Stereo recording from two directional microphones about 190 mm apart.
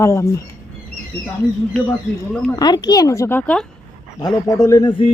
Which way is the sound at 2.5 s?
20° left (ahead or behind).